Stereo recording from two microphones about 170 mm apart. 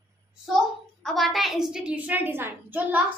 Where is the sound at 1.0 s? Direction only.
Centre (ahead or behind).